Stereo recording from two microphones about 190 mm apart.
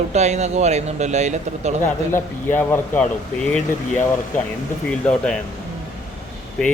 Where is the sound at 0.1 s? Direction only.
35° right (ahead or behind).